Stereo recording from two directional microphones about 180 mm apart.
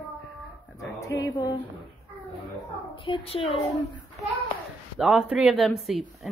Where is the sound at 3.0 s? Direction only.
30° left (ahead or behind).